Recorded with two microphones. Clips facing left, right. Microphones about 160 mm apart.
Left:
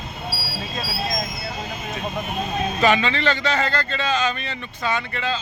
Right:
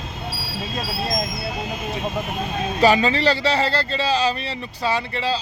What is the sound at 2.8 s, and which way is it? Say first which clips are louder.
A man's voice: right 4 dB; 35° right (ahead or behind).